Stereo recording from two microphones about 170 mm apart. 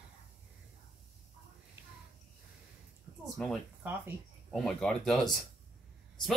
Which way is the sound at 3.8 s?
10° right (ahead or behind).